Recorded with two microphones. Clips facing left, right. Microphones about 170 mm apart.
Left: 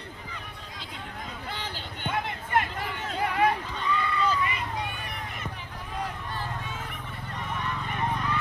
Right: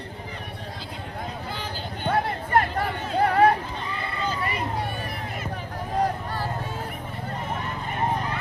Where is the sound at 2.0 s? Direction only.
35° right (ahead or behind).